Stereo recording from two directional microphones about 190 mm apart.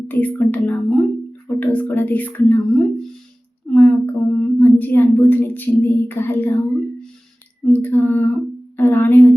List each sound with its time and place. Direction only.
0.1 s speech: 10° left (ahead or behind)